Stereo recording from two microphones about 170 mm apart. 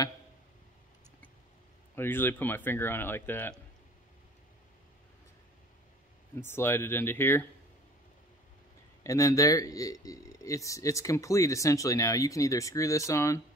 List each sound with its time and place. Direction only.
2.0 s speech: 10° left (ahead or behind)
6.4 s speech: 15° left (ahead or behind)
9.0 s speech: 20° left (ahead or behind)